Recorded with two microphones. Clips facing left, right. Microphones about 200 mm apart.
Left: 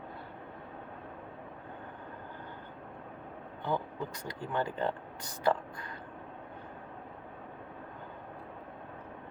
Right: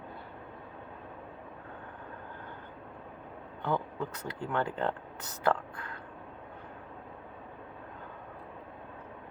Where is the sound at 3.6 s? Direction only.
10° left (ahead or behind).